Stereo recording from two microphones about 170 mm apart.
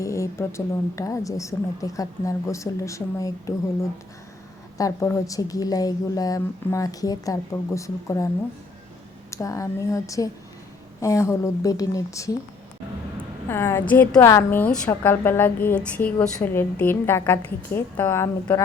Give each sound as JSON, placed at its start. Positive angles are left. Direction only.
{"t": 0.0, "sound": "a woman's voice", "side_deg": 15}
{"t": 4.8, "sound": "a woman's voice", "side_deg": 15}
{"t": 9.3, "sound": "a woman's voice", "side_deg": 20}
{"t": 13.5, "sound": "a woman's voice", "side_deg": 15}